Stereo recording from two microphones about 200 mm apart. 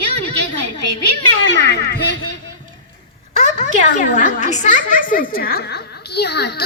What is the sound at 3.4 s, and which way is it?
A child's voice, 35° left (ahead or behind).